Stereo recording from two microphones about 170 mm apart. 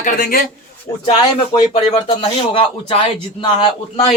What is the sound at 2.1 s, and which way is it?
Speech, 30° left (ahead or behind).